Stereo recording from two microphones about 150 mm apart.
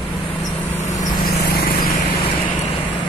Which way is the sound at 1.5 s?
85° left.